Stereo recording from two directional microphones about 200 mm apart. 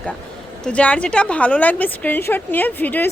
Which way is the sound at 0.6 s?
5° left (ahead or behind).